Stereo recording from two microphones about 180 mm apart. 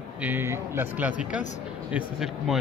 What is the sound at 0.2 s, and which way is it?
Speech, 10° right (ahead or behind).